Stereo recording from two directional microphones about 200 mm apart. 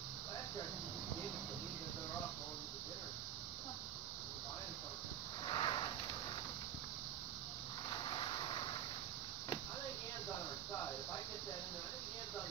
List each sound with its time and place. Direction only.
5.5 s sniff: 20° left (ahead or behind)